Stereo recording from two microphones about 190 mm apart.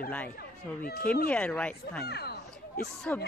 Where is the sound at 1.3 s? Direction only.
5° left (ahead or behind).